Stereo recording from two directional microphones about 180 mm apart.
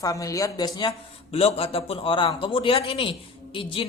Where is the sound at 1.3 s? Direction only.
35° left (ahead or behind).